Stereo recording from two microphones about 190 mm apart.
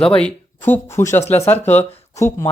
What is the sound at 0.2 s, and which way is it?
Speech, 5° left (ahead or behind).